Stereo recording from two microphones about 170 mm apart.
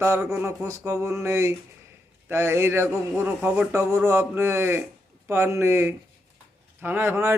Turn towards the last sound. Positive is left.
turn(degrees=-15)  # may be behind; listen again after turning